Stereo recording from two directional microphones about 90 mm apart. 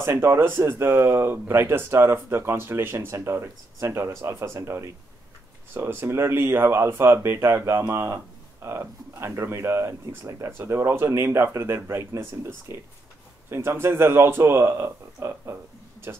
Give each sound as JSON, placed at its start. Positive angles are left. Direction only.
{"t": 0.0, "sound": "speech", "side_deg": -25}